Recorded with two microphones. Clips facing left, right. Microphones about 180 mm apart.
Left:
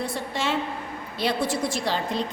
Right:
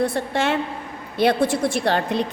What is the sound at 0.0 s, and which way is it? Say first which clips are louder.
A woman's voice: right 7 dB; 55° right (ahead or behind).